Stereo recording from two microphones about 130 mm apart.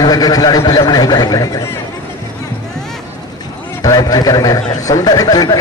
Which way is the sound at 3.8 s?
30° left (ahead or behind).